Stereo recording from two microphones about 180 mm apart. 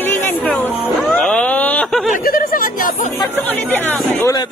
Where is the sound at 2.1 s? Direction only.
55° left (ahead or behind).